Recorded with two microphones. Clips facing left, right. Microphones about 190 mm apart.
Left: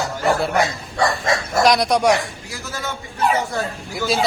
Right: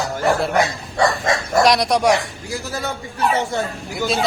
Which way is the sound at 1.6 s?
Centre (ahead or behind).